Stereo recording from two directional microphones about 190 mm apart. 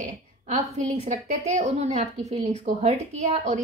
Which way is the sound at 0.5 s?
35° right (ahead or behind).